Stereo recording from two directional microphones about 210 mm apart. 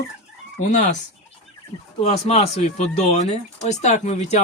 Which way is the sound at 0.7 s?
35° left (ahead or behind).